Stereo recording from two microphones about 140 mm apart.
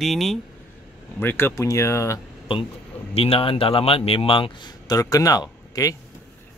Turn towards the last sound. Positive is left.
turn(degrees=25)  # may be behind; listen again after turning